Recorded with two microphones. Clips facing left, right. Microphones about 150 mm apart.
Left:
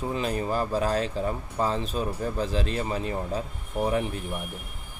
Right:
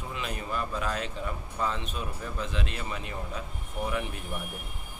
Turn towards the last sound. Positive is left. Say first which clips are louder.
# left 6 dB
turn(degrees=35)  # may be behind; listen again after turning